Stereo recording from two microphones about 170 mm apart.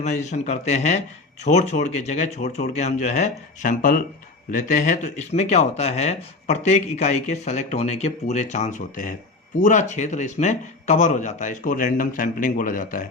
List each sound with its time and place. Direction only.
0.0 s a man's voice: 45° left (ahead or behind)